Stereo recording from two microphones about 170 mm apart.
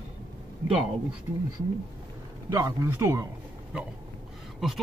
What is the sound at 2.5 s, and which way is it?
Speech, 20° right (ahead or behind).